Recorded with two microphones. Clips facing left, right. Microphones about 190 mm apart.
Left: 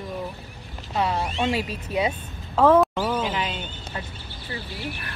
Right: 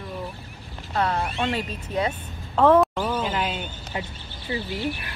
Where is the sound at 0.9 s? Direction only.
10° left (ahead or behind).